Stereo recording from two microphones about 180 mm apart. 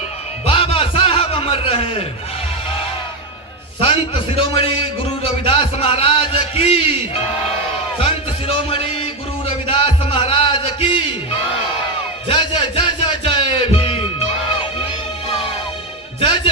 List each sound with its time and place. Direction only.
0.4 s music: 30° left (ahead or behind)
3.8 s a man's voice: 30° left (ahead or behind)
7.9 s music: 30° left (ahead or behind)
12.3 s music: 30° left (ahead or behind)